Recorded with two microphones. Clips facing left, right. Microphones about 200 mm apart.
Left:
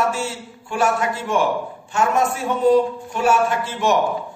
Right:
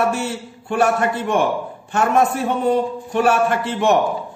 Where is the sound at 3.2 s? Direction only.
60° right (ahead or behind).